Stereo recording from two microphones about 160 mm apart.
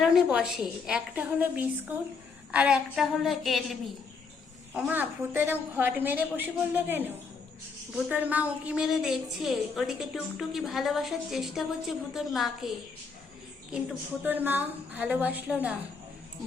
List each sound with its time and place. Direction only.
0.0 s a woman's voice: centre (ahead or behind)
4.7 s a woman's voice: 10° right (ahead or behind)
14.3 s a woman's voice: 10° right (ahead or behind)